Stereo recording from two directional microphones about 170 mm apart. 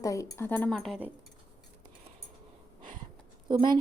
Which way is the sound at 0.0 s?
20° left (ahead or behind).